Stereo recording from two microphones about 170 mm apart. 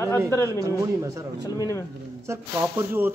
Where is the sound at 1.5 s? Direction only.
20° left (ahead or behind).